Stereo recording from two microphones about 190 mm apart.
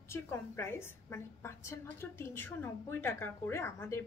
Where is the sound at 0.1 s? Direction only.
10° left (ahead or behind).